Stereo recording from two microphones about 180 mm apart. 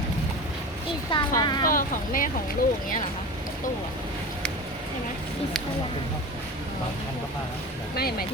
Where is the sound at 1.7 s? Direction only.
50° left (ahead or behind).